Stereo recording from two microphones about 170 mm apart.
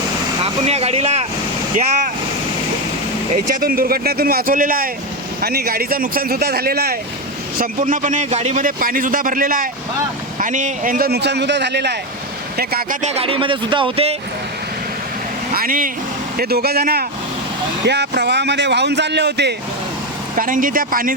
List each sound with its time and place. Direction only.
0.4 s speech: 35° right (ahead or behind)
3.3 s speech: 55° right (ahead or behind)
7.6 s a man's voice: 50° right (ahead or behind)
8.6 s speech: 55° right (ahead or behind); by 11.9 s 85° right
12.5 s speech: 65° right (ahead or behind)
13.0 s speech: 40° right (ahead or behind)
15.5 s speech: 55° right (ahead or behind)
16.4 s speech: 65° right (ahead or behind)
17.8 s speech: 80° right
20.3 s speech: 55° right (ahead or behind)